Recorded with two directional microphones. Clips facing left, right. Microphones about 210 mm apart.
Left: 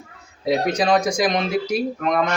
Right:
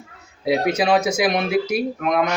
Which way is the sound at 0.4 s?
10° right (ahead or behind).